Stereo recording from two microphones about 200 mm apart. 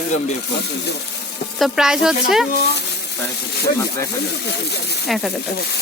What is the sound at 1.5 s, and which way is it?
Speech, centre (ahead or behind).